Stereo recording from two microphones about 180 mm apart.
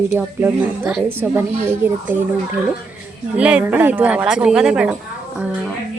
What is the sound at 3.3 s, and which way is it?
Speech, 5° right (ahead or behind).